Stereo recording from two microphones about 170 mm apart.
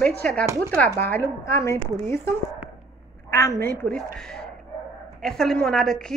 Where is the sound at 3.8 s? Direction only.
5° left (ahead or behind).